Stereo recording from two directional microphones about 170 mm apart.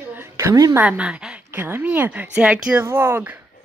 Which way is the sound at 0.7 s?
5° right (ahead or behind).